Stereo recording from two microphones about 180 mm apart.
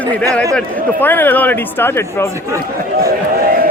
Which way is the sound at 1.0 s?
10° left (ahead or behind).